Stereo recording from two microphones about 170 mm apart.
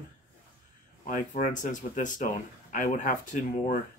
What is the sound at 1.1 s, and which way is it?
Speech, 45° left (ahead or behind).